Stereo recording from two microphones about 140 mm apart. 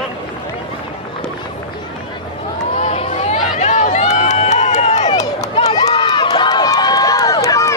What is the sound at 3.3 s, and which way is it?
Crowd, 55° left (ahead or behind).